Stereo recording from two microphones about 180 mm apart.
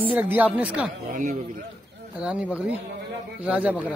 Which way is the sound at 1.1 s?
50° right (ahead or behind).